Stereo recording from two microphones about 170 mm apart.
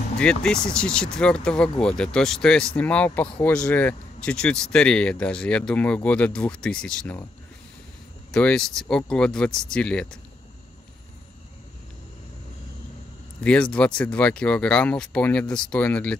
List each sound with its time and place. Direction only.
0.2 s speech: 5° left (ahead or behind)
8.3 s speech: 5° left (ahead or behind)
13.4 s speech: 5° left (ahead or behind)